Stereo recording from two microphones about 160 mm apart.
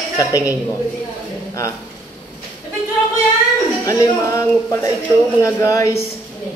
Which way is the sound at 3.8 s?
20° left (ahead or behind).